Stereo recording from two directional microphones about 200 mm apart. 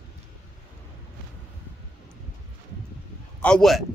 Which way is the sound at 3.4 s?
5° left (ahead or behind).